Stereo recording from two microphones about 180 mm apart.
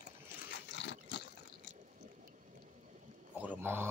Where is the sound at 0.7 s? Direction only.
75° left (ahead or behind).